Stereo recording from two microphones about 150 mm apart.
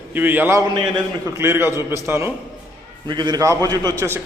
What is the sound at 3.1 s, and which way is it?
A man's voice, 30° right (ahead or behind).